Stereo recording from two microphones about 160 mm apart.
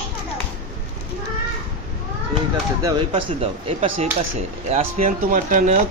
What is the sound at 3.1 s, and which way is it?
Speech, 35° right (ahead or behind).